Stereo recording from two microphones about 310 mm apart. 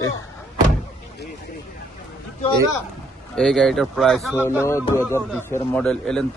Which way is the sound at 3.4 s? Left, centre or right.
Centre.